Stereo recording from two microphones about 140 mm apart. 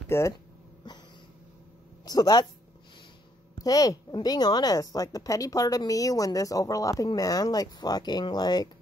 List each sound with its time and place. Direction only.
0.1 s speech: 20° left (ahead or behind)
0.8 s a sound: 30° left (ahead or behind)
2.0 s a woman's voice: 30° left (ahead or behind)
3.5 s a woman's voice: 25° left (ahead or behind)